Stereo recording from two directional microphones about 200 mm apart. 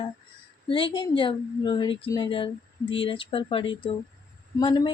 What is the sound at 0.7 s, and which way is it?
A woman's voice, 25° left (ahead or behind).